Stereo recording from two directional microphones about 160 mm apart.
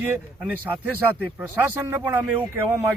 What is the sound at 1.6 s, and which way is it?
Speech, 15° right (ahead or behind).